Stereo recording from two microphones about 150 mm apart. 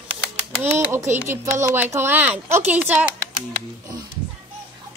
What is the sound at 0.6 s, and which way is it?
Speech, 15° right (ahead or behind).